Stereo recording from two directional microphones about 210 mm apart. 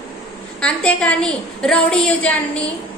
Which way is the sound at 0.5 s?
5° left (ahead or behind).